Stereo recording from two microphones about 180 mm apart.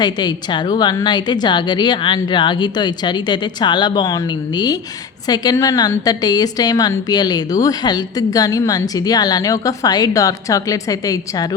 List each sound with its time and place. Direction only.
0.0 s a woman's voice: 25° left (ahead or behind)